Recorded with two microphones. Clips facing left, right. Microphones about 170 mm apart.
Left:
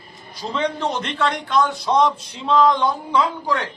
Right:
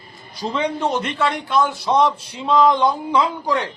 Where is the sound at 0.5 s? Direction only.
10° right (ahead or behind).